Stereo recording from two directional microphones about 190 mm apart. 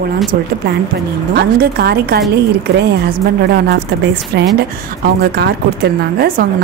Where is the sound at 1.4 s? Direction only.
55° right (ahead or behind).